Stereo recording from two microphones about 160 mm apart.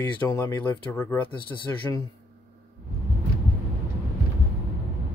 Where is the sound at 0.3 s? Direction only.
20° left (ahead or behind).